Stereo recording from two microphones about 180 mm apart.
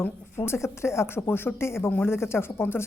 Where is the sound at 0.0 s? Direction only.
15° left (ahead or behind).